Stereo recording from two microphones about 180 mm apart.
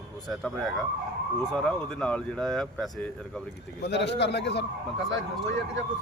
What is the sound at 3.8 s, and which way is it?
Speech, 70° left (ahead or behind).